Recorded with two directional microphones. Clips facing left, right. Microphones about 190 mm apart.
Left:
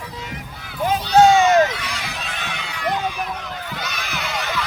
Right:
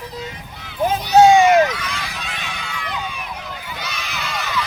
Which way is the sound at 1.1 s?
15° right (ahead or behind).